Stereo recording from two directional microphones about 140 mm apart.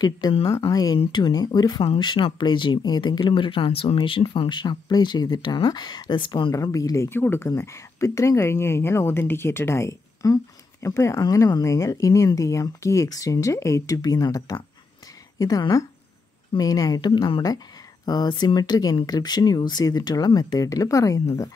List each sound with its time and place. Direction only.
0.5 s speech: 25° left (ahead or behind)
6.5 s speech: 25° left (ahead or behind)